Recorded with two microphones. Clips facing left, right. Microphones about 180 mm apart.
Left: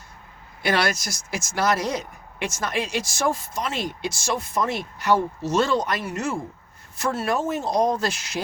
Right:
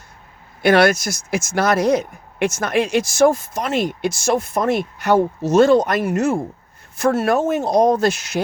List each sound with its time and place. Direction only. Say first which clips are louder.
0.6 s speech: right 9 dB; 55° right (ahead or behind)
7.3 s speech: right 7 dB; 70° right (ahead or behind)